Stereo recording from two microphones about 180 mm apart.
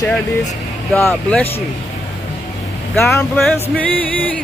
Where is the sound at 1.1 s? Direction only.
5° left (ahead or behind).